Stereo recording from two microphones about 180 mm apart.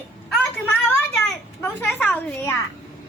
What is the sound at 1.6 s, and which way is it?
A woman's voice, 10° left (ahead or behind).